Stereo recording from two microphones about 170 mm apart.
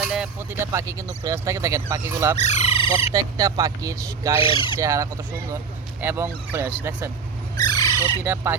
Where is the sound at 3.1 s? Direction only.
25° right (ahead or behind).